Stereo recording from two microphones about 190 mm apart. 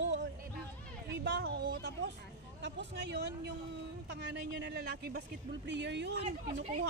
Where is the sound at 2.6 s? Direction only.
65° right (ahead or behind).